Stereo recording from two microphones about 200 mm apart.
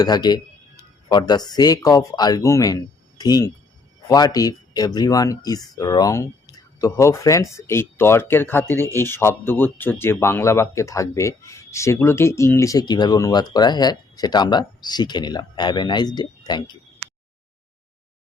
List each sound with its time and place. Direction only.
0.0 s speech: 20° left (ahead or behind)